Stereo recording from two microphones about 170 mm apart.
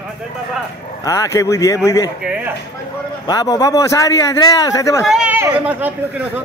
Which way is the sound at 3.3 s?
20° left (ahead or behind).